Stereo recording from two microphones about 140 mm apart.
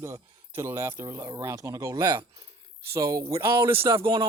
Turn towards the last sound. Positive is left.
turn(degrees=-40)  # may be behind; listen again after turning